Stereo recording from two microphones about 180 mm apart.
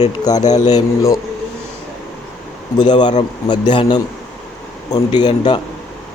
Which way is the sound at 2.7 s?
25° left (ahead or behind).